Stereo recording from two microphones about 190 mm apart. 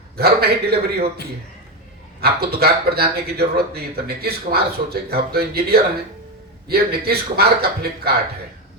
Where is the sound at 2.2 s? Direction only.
55° right (ahead or behind).